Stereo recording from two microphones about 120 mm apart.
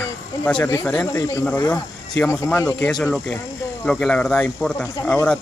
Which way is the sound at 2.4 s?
25° left (ahead or behind).